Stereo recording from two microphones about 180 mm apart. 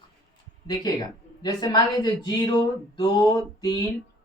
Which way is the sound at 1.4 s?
20° left (ahead or behind).